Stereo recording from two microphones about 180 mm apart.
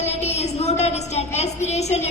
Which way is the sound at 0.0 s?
35° left (ahead or behind).